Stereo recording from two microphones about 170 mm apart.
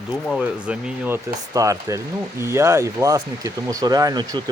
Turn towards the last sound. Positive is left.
turn(degrees=-20)  # may be behind; listen again after turning